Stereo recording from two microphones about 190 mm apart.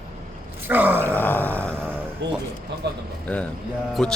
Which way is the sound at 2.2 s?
65° right (ahead or behind).